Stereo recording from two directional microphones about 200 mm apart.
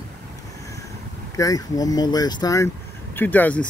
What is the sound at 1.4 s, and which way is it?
Speech, 15° left (ahead or behind).